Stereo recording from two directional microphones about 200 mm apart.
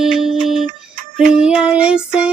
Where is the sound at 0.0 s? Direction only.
Centre (ahead or behind).